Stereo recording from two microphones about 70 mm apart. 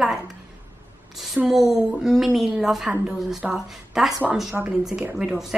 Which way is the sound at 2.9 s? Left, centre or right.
Centre.